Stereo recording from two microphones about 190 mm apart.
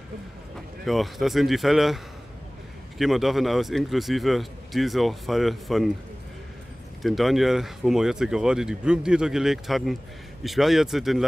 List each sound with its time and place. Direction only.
0.8 s speech: centre (ahead or behind)
3.0 s speech: centre (ahead or behind)
7.0 s speech: centre (ahead or behind)